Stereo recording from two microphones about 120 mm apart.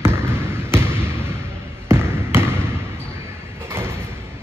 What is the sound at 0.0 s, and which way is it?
Basketball bounce, 20° right (ahead or behind).